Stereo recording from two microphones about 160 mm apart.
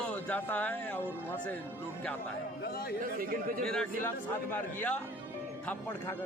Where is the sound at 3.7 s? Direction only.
5° left (ahead or behind).